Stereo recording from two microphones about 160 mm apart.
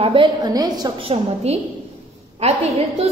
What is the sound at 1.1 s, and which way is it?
A woman's voice, 40° right (ahead or behind).